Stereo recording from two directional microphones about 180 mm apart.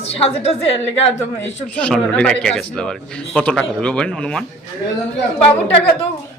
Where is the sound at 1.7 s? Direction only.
5° left (ahead or behind).